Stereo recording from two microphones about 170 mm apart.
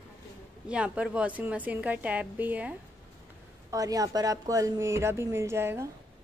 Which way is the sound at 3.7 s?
20° right (ahead or behind).